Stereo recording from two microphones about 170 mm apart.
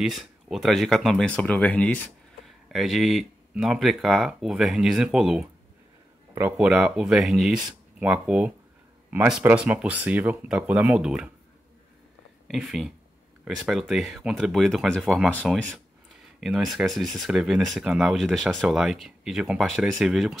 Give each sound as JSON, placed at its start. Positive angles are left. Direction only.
{"t": 0.0, "sound": "speech", "side_deg": 0}
{"t": 12.4, "sound": "speech", "side_deg": 0}